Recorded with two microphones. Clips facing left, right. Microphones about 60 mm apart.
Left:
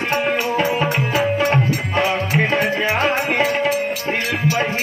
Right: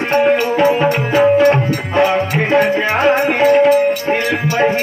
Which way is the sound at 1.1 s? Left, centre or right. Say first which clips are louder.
Right 10 dB; right.